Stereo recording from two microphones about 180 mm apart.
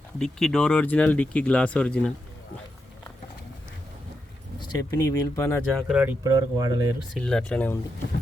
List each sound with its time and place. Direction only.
0.2 s speech: centre (ahead or behind)
4.6 s speech: 20° left (ahead or behind)
5.9 s speech: 10° right (ahead or behind)
7.1 s speech: 5° left (ahead or behind)